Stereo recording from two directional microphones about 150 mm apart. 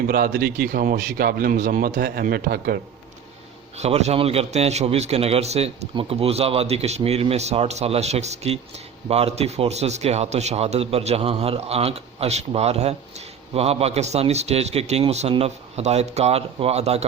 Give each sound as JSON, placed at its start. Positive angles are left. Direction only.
{"t": 0.1, "sound": "a man's voice", "side_deg": -80}
{"t": 3.8, "sound": "a man's voice", "side_deg": -45}